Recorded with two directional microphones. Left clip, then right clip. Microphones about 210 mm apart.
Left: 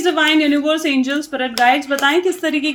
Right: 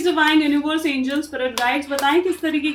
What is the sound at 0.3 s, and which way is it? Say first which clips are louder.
Speech: left 3 dB; 50° left (ahead or behind).